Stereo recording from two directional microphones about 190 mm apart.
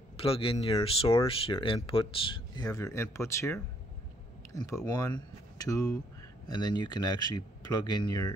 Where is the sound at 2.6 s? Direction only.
20° left (ahead or behind).